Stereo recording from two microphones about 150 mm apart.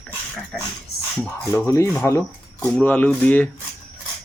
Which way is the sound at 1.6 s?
20° left (ahead or behind).